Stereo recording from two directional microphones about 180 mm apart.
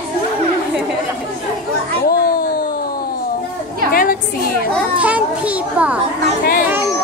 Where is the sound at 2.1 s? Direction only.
55° left (ahead or behind).